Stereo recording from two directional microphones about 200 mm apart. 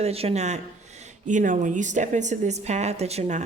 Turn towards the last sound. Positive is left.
turn(degrees=-35)  # may be behind; listen again after turning